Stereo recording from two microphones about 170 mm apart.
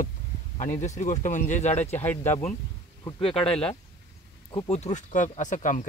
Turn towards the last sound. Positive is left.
turn(degrees=45)  # may be behind; listen again after turning